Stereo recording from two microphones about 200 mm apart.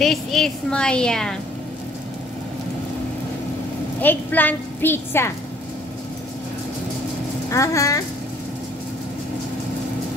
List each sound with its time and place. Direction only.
0.0 s a woman's voice: centre (ahead or behind)
4.0 s a woman's voice: 10° left (ahead or behind)
7.5 s a woman's voice: 15° left (ahead or behind)